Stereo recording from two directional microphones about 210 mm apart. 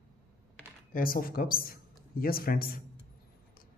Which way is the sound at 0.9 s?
45° left (ahead or behind).